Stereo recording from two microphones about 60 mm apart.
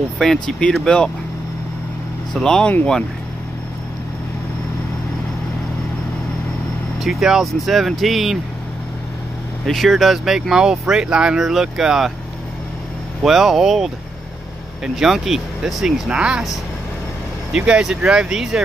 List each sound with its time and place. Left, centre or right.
0.2 s speech: centre
2.3 s speech: centre
7.0 s speech: centre
9.7 s speech: centre
13.2 s speech: centre
15.0 s speech: centre
17.5 s speech: centre